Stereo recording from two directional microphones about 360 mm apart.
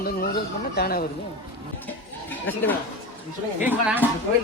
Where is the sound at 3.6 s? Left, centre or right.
Centre.